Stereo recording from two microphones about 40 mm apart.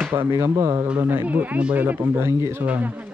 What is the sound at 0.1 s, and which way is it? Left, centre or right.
Speech, right.